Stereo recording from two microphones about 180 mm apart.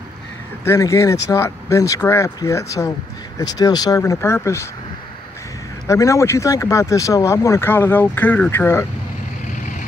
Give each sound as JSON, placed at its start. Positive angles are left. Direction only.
{"t": 0.7, "sound": "speech", "side_deg": 15}
{"t": 5.9, "sound": "speech", "side_deg": 15}
{"t": 9.5, "sound": "vehicle", "side_deg": 45}